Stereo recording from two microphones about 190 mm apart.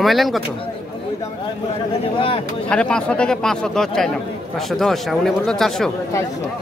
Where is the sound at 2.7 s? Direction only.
5° left (ahead or behind).